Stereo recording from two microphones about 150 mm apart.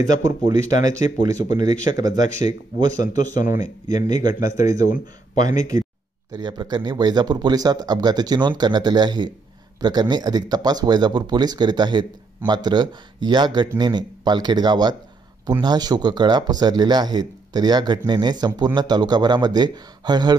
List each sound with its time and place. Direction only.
0.0 s a man's voice: 25° right (ahead or behind)